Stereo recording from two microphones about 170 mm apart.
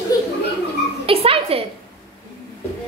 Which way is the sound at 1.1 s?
35° right (ahead or behind).